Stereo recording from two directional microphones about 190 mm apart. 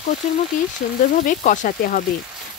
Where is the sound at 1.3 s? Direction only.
45° left (ahead or behind).